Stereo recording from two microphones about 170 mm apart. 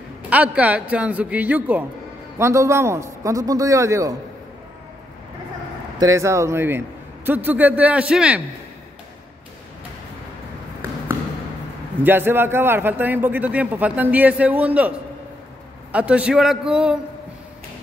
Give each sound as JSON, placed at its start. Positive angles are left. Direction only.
{"t": 0.3, "sound": "a man's voice", "side_deg": -10}
{"t": 5.9, "sound": "a man's voice", "side_deg": -20}
{"t": 12.0, "sound": "a man's voice", "side_deg": -10}